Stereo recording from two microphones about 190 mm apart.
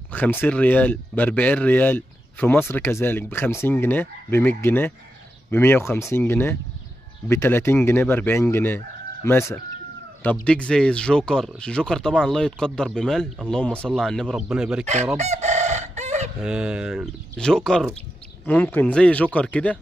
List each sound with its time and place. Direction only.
0.1 s speech: 10° left (ahead or behind)
15.1 s chicken: 35° right (ahead or behind)
16.3 s speech: 5° right (ahead or behind)